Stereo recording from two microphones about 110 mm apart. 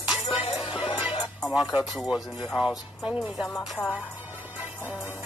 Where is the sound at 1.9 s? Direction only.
Centre (ahead or behind).